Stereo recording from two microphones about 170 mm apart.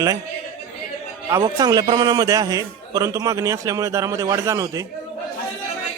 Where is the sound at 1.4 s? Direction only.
25° right (ahead or behind).